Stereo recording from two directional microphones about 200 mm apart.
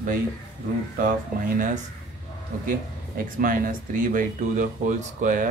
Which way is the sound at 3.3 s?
45° right (ahead or behind).